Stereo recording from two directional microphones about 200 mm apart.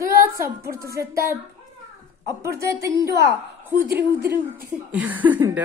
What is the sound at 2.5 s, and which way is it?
Speech, 15° right (ahead or behind).